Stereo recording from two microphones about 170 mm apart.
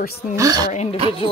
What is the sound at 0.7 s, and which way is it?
Speech, 40° left (ahead or behind).